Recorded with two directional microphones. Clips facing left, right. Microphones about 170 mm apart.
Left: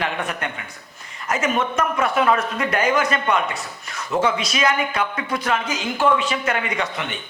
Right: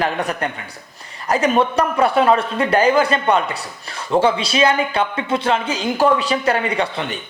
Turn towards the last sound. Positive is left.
turn(degrees=-30)  # may be behind; listen again after turning